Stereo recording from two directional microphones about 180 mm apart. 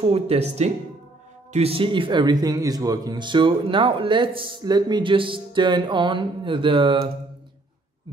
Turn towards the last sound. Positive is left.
turn(degrees=-30)  # may be behind; listen again after turning